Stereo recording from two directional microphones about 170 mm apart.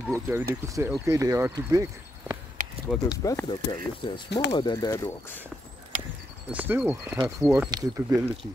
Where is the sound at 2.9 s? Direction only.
10° right (ahead or behind).